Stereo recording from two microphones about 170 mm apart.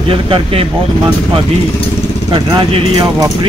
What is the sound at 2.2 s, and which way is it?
A man's voice, 25° right (ahead or behind).